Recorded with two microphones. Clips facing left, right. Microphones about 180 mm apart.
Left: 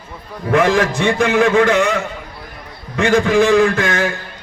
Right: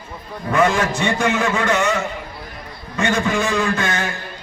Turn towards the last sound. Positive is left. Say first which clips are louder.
# left 6 dB
turn(degrees=60)  # may be behind; listen again after turning